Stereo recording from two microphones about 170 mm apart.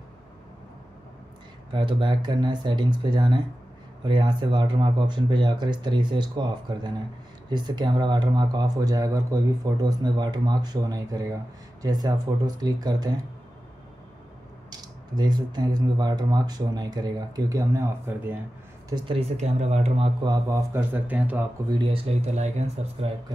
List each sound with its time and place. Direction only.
1.7 s speech: 30° right (ahead or behind)
14.7 s speech: 25° right (ahead or behind)
18.9 s speech: 30° right (ahead or behind)
20.2 s speech: 15° right (ahead or behind)
21.6 s speech: 30° right (ahead or behind)